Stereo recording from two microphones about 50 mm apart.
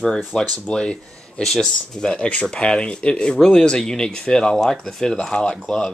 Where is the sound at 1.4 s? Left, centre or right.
Centre.